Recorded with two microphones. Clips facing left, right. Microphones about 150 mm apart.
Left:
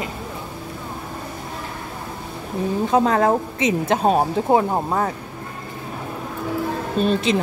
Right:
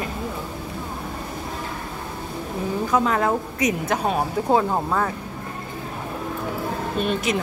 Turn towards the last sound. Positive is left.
turn(degrees=30)  # may be behind; listen again after turning